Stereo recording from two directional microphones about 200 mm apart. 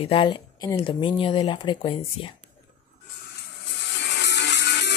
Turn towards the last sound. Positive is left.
turn(degrees=60)  # may be behind; listen again after turning